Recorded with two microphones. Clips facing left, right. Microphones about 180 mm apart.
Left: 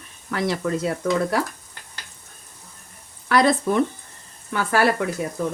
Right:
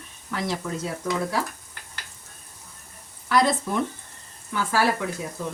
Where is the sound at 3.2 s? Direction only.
65° left (ahead or behind).